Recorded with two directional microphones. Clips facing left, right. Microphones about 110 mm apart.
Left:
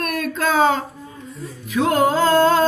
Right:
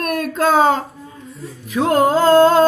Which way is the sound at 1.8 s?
45° right (ahead or behind).